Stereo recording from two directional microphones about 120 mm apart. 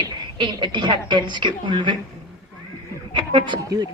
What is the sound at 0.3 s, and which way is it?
A woman's voice, 40° right (ahead or behind).